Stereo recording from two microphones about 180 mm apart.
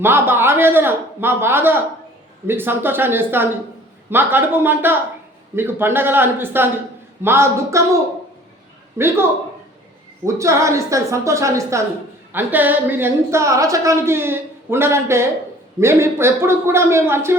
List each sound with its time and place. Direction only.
0.0 s a woman's voice: 10° right (ahead or behind)
9.0 s a woman's voice: 15° right (ahead or behind)
10.2 s a woman's voice: 15° right (ahead or behind)